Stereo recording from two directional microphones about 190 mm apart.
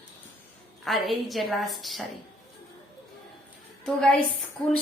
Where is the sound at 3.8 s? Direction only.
5° left (ahead or behind).